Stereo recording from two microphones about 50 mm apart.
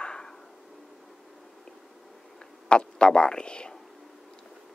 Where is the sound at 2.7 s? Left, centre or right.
Centre.